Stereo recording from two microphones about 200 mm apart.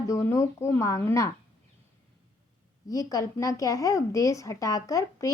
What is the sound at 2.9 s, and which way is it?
A woman's voice, 15° left (ahead or behind).